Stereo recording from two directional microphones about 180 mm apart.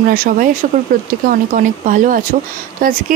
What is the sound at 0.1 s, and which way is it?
Speech, 50° right (ahead or behind).